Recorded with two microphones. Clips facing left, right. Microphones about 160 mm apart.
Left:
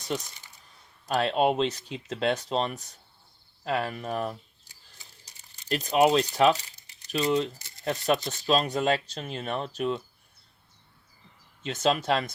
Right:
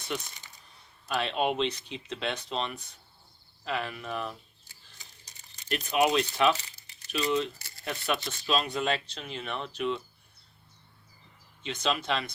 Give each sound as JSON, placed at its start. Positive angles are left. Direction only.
{"t": 1.0, "sound": "speech", "side_deg": 40}
{"t": 5.6, "sound": "speech", "side_deg": 35}
{"t": 11.6, "sound": "speech", "side_deg": 45}